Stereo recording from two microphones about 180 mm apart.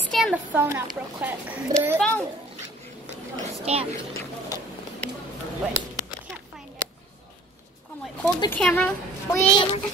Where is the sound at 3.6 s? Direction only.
35° right (ahead or behind).